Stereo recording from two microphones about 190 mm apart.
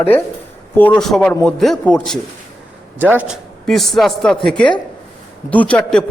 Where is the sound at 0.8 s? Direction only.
5° left (ahead or behind).